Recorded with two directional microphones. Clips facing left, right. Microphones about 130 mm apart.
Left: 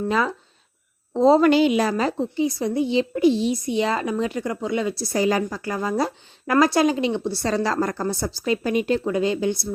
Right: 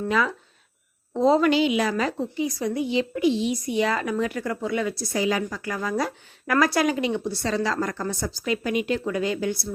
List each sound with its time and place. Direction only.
0.1 s a woman's voice: 30° left (ahead or behind)
1.5 s a woman's voice: 45° left (ahead or behind); by 5.0 s 25° left (ahead or behind)
5.1 s a woman's voice: 40° left (ahead or behind); by 9.6 s 25° left (ahead or behind)